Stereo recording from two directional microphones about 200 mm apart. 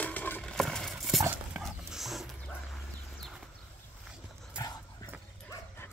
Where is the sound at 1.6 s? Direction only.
Centre (ahead or behind).